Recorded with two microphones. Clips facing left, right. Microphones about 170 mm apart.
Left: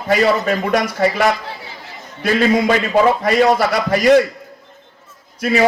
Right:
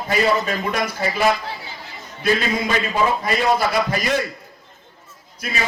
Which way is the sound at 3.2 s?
75° left (ahead or behind).